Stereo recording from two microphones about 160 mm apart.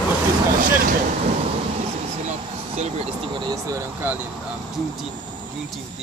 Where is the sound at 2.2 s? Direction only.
40° right (ahead or behind).